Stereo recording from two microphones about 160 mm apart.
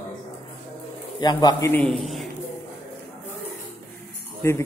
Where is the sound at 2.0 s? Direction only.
Centre (ahead or behind).